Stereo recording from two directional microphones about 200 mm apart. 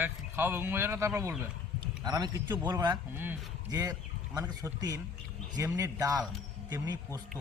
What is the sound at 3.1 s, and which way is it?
Speech, 10° right (ahead or behind).